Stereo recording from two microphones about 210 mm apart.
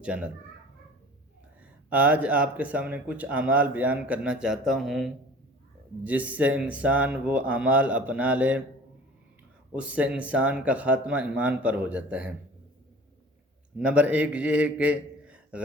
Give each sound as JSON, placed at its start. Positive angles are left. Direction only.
{"t": 0.0, "sound": "speech", "side_deg": -5}
{"t": 1.9, "sound": "speech", "side_deg": -5}
{"t": 9.7, "sound": "speech", "side_deg": -5}
{"t": 13.7, "sound": "a man's voice", "side_deg": -5}